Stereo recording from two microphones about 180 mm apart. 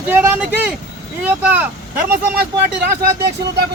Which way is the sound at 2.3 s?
60° right (ahead or behind).